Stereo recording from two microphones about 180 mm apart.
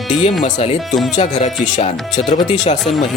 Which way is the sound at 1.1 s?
40° left (ahead or behind).